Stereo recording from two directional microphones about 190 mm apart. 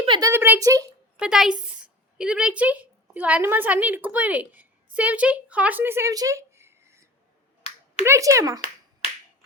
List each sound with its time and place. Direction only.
0.0 s a sound: 20° right (ahead or behind)
1.2 s a woman's voice: 5° right (ahead or behind)
9.0 s finger snapping: 30° left (ahead or behind)